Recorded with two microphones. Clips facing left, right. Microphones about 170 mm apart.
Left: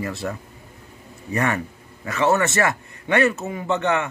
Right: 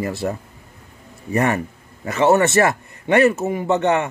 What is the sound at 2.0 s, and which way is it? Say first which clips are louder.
Speech: right 4 dB; 20° right (ahead or behind).